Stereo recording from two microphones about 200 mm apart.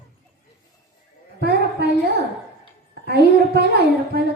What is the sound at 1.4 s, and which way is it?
Music, 55° right (ahead or behind).